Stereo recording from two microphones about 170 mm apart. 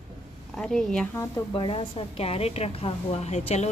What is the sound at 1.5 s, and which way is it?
A woman's voice, 30° left (ahead or behind).